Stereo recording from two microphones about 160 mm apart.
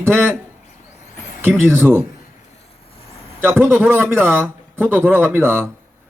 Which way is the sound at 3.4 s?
10° right (ahead or behind).